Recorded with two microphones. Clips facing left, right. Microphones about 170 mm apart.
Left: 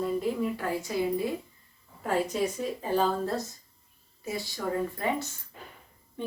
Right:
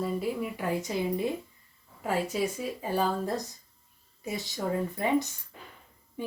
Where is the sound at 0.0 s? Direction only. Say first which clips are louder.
Left 2 dB; 10° right (ahead or behind).